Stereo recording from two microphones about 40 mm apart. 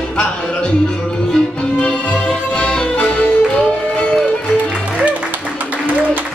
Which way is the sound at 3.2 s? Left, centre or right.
Left.